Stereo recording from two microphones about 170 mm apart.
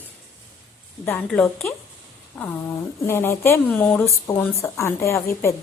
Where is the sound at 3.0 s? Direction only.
15° left (ahead or behind).